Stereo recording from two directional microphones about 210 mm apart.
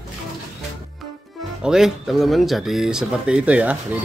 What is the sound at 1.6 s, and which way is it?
Speech, centre (ahead or behind).